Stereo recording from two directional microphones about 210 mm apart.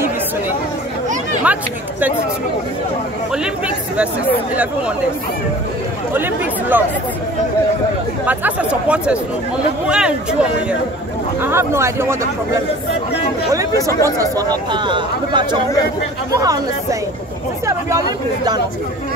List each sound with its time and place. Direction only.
1.4 s speech: 5° right (ahead or behind)
3.6 s speech: 5° right (ahead or behind)
6.1 s speech: 10° right (ahead or behind)
8.3 s speech: 5° right (ahead or behind)
11.4 s speech: 10° right (ahead or behind)
14.0 s speech: 15° right (ahead or behind)
17.6 s a sound: 15° right (ahead or behind)